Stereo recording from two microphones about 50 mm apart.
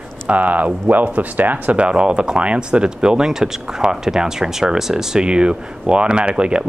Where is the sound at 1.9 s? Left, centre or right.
Centre.